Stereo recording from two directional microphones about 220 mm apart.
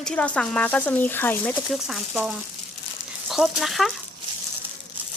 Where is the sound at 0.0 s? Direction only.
5° left (ahead or behind).